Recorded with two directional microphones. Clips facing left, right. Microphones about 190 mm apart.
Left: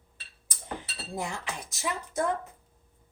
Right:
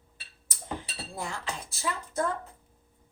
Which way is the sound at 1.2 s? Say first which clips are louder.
Left 1 dB; 15° left (ahead or behind).